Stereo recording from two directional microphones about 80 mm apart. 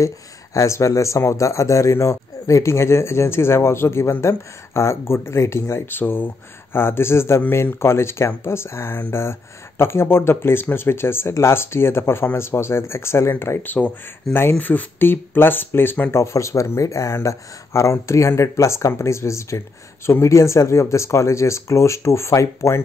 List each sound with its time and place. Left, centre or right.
0.6 s speech: left
13.7 s speech: centre
14.6 s speech: left